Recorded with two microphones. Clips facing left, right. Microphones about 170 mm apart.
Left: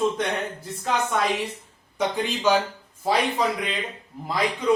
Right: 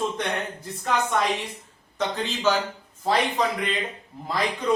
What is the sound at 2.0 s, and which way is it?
Speech, 15° left (ahead or behind).